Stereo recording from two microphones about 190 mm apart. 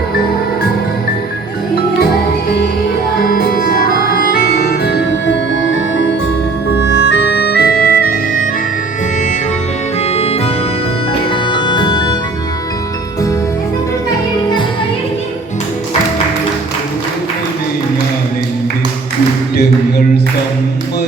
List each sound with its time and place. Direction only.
3.2 s music: 55° left (ahead or behind); by 6.1 s 75° left (ahead or behind)
6.7 s music: 65° left (ahead or behind)
10.1 s music: 30° left (ahead or behind)